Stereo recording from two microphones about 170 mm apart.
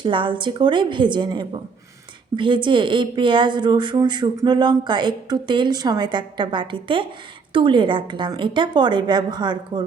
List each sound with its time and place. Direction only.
0.0 s a woman's voice: 30° right (ahead or behind)